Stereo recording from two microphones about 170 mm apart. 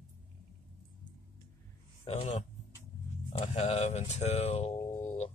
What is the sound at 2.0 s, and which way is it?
Speech, 35° left (ahead or behind).